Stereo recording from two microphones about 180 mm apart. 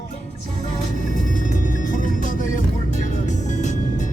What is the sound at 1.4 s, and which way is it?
Music, 45° left (ahead or behind).